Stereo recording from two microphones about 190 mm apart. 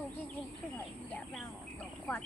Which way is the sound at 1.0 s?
5° left (ahead or behind).